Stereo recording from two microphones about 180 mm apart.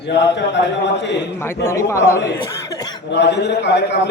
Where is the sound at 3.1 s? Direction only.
75° left (ahead or behind).